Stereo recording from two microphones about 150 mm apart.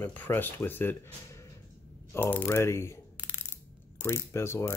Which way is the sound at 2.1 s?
15° left (ahead or behind).